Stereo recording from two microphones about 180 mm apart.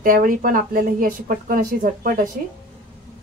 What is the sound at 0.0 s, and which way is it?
Speech, 50° right (ahead or behind).